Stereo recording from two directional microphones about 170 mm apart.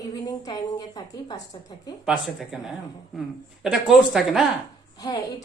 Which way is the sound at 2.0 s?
Centre (ahead or behind).